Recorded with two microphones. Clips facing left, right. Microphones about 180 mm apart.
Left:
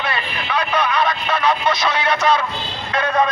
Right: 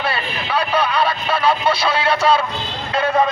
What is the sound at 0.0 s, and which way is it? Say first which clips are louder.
Vehicle: right 1 dB; 30° right (ahead or behind).